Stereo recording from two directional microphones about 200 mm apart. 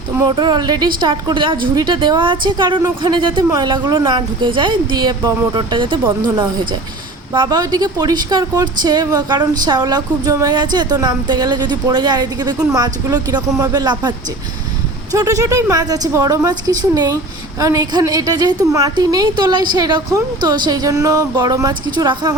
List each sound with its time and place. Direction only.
0.1 s speech: 15° right (ahead or behind)
15.1 s a woman's voice: 15° right (ahead or behind)